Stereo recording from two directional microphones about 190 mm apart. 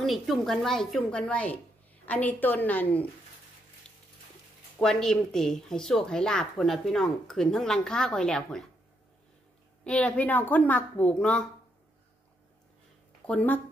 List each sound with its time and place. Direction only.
0.0 s a woman's voice: centre (ahead or behind)
4.7 s a woman's voice: 5° left (ahead or behind)
9.8 s a woman's voice: 5° left (ahead or behind)
13.3 s a woman's voice: 10° left (ahead or behind)